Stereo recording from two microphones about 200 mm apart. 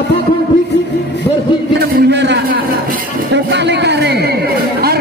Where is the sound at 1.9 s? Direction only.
55° right (ahead or behind).